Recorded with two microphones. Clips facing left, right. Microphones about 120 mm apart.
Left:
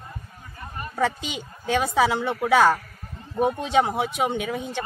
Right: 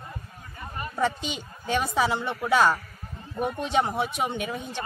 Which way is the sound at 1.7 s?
90° left.